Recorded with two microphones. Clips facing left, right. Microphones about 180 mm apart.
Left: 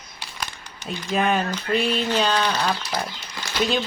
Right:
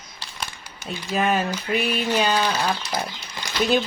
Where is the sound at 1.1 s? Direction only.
Centre (ahead or behind).